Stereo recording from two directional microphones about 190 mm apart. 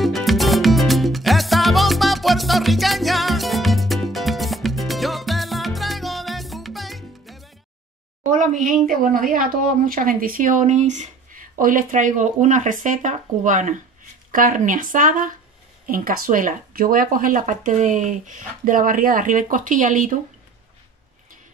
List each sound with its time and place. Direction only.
0.0 s salsa music: centre (ahead or behind)
8.2 s a sound: 40° right (ahead or behind)
8.8 s speech: 45° right (ahead or behind)